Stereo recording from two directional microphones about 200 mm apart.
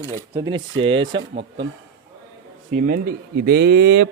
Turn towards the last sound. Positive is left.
turn(degrees=-60)  # may be behind; listen again after turning